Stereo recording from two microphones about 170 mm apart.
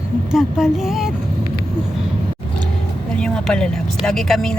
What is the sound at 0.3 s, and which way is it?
Speech, centre (ahead or behind).